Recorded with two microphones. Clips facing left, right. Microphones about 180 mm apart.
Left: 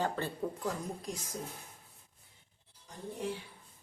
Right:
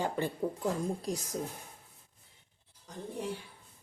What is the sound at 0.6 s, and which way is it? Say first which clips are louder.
Speech: right 5 dB; 30° right (ahead or behind).